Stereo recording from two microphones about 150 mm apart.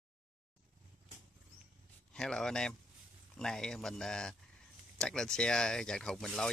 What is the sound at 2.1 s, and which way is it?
Speech, 5° left (ahead or behind).